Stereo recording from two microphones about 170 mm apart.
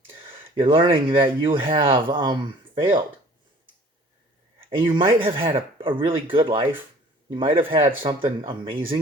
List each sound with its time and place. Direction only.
0.3 s speech: 30° right (ahead or behind)
4.8 s speech: 30° right (ahead or behind)